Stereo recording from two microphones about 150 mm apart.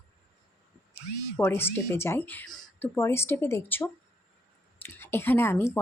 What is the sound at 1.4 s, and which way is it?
Speech, 15° left (ahead or behind).